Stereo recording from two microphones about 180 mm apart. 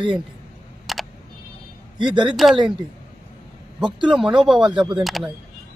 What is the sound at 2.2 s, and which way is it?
Speech, 5° right (ahead or behind).